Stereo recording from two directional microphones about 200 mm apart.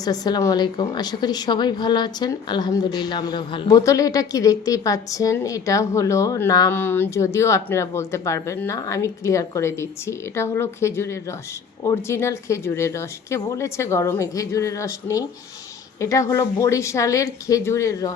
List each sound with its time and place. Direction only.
0.0 s a woman's voice: 20° left (ahead or behind)